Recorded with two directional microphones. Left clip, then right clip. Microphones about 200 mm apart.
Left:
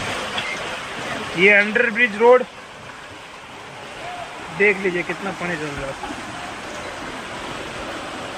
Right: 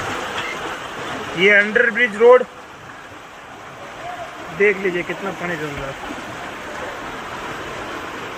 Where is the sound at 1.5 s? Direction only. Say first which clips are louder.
Right 2 dB; 20° left (ahead or behind).